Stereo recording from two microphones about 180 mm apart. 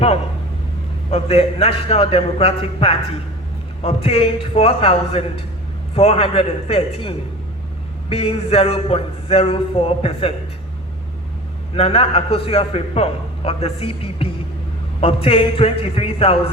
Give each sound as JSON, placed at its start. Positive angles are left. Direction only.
{"t": 1.1, "sound": "a man's voice", "side_deg": 35}
{"t": 11.8, "sound": "a man's voice", "side_deg": 35}